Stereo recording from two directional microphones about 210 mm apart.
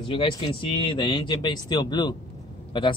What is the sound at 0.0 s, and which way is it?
Speech, 25° left (ahead or behind).